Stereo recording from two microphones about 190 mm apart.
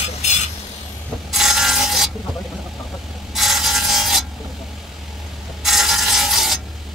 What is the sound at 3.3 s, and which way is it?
Mechanisms, centre (ahead or behind).